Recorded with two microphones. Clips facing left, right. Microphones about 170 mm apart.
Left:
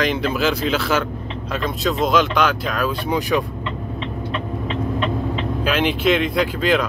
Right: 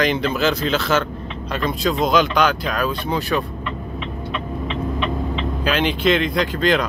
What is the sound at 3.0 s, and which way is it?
Speech, 15° left (ahead or behind).